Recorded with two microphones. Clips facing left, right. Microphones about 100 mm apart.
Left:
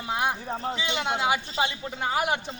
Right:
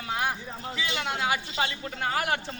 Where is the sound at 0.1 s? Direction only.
20° left (ahead or behind).